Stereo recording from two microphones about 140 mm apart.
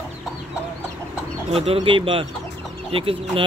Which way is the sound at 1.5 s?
45° right (ahead or behind).